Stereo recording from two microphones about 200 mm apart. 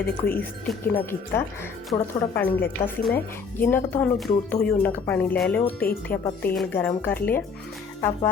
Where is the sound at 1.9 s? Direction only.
25° left (ahead or behind).